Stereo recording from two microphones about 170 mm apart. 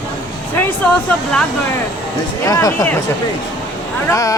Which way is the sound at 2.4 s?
20° left (ahead or behind).